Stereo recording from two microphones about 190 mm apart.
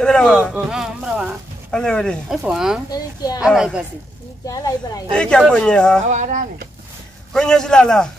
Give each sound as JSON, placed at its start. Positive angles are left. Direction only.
{"t": 0.0, "sound": "speech", "side_deg": 5}
{"t": 2.9, "sound": "speech", "side_deg": 20}
{"t": 3.3, "sound": "speech", "side_deg": -5}
{"t": 4.5, "sound": "speech", "side_deg": 20}
{"t": 5.1, "sound": "speech", "side_deg": 5}
{"t": 6.0, "sound": "speech", "side_deg": -40}
{"t": 7.3, "sound": "speech", "side_deg": 5}